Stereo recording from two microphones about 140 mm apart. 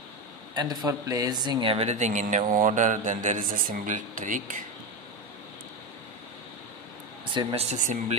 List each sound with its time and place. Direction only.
0.6 s speech: 25° right (ahead or behind)
1.9 s a man's voice: 55° right (ahead or behind)
7.3 s speech: 45° right (ahead or behind)
7.7 s a man's voice: 60° right (ahead or behind)